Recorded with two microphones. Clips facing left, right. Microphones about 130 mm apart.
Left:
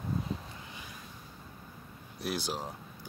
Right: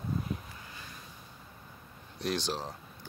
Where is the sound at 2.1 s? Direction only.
10° left (ahead or behind).